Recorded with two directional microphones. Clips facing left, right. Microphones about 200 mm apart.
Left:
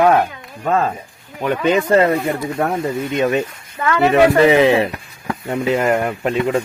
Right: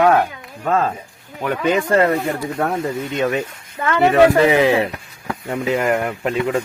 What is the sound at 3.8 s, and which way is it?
Speech, 25° right (ahead or behind).